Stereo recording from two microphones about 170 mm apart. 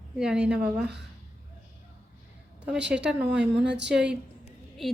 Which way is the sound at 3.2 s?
85° right.